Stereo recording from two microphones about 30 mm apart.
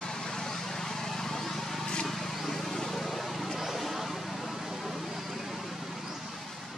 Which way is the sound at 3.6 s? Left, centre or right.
Centre.